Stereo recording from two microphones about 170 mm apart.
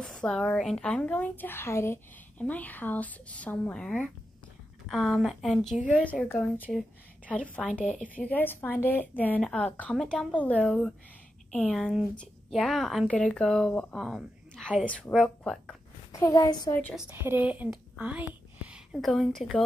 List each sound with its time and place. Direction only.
0.0 s a woman's voice: centre (ahead or behind)
16.1 s a woman's voice: 20° left (ahead or behind)
16.9 s speech: 10° right (ahead or behind)